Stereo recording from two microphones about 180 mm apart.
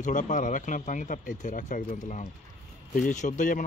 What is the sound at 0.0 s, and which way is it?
Speech, 45° left (ahead or behind).